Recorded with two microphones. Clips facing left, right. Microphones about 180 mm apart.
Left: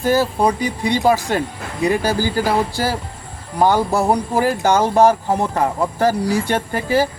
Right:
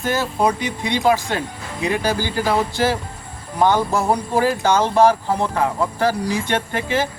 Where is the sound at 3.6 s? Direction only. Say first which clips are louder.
Left 2 dB; 10° left (ahead or behind).